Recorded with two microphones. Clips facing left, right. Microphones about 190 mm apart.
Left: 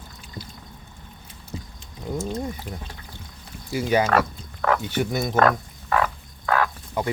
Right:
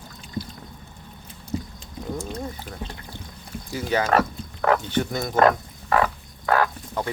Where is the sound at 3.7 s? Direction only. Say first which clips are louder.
Left 1 dB; 10° left (ahead or behind).